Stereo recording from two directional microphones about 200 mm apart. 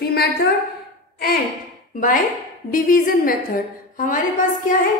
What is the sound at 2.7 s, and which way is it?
A woman's voice, 45° left (ahead or behind).